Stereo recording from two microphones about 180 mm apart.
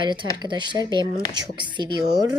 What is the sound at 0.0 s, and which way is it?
Speech, 25° right (ahead or behind).